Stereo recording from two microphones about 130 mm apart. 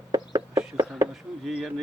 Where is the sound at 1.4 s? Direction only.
Centre (ahead or behind).